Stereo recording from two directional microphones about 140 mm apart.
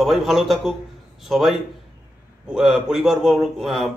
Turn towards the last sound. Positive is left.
turn(degrees=0)  # may be behind; listen again after turning